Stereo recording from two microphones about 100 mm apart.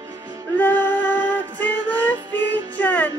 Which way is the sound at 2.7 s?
15° left (ahead or behind).